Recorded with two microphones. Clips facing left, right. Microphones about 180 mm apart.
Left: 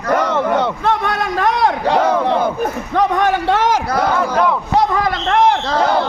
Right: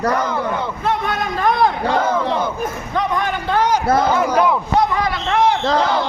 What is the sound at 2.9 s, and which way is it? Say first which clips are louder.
Speech: left 6 dB; 70° left (ahead or behind).